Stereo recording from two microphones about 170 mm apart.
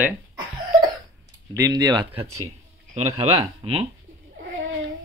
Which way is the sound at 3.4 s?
30° right (ahead or behind).